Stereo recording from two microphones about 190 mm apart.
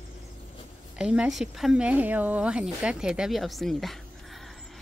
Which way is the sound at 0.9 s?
5° right (ahead or behind).